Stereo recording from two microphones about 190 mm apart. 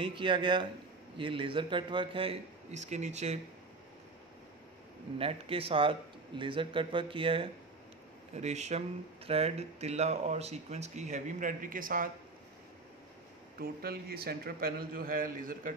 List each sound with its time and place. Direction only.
0.0 s a man's voice: 25° right (ahead or behind)
5.2 s a man's voice: 30° right (ahead or behind); by 12.1 s 45° right (ahead or behind)
13.6 s a man's voice: 55° right (ahead or behind)